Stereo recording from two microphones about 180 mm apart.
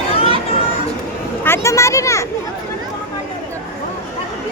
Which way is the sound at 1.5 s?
15° left (ahead or behind).